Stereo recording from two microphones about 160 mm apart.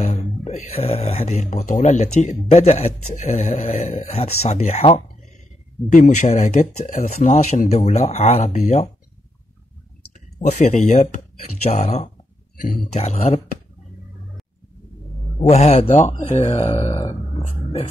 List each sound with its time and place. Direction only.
0.0 s speech: 45° left (ahead or behind)
10.1 s speech: 50° left (ahead or behind)
15.4 s speech: 45° left (ahead or behind)